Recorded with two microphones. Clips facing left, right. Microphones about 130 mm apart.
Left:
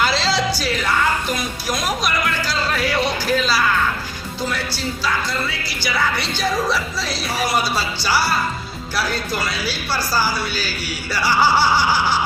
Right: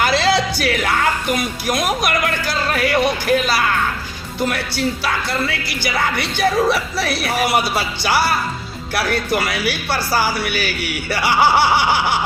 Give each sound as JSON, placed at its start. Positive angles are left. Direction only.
{"t": 0.0, "sound": "music", "side_deg": -55}
{"t": 1.6, "sound": "speech", "side_deg": -55}